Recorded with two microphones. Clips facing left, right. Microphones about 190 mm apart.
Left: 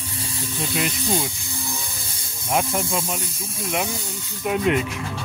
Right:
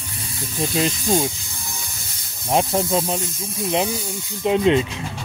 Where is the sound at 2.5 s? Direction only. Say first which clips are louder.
Right 4 dB; 25° right (ahead or behind).